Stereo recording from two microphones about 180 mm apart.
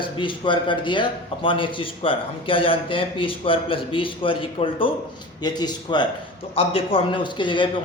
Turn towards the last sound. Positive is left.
turn(degrees=25)  # may be behind; listen again after turning